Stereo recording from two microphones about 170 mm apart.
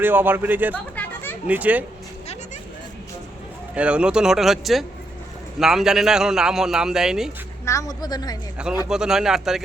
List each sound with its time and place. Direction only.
0.0 s a man's voice: 10° right (ahead or behind)
0.9 s chatter: 10° left (ahead or behind)
1.5 s a man's voice: 10° right (ahead or behind)
3.8 s a man's voice: 5° right (ahead or behind)
7.6 s a woman's voice: 20° left (ahead or behind)
8.9 s a man's voice: 5° right (ahead or behind)